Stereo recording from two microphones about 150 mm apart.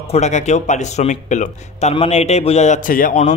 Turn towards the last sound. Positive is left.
turn(degrees=50)  # may be behind; listen again after turning